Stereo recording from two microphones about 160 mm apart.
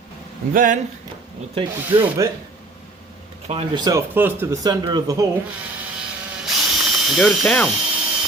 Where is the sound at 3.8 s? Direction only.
20° right (ahead or behind).